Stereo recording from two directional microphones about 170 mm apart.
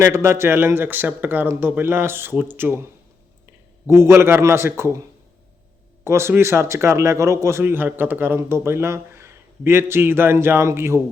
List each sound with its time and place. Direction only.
0.0 s a man's voice: 15° right (ahead or behind)
3.8 s a man's voice: 15° right (ahead or behind)
6.1 s a man's voice: 15° right (ahead or behind)